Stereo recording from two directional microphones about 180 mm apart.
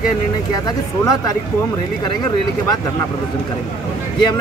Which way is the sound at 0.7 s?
20° left (ahead or behind).